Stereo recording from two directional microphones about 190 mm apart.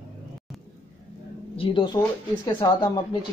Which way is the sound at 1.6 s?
30° left (ahead or behind).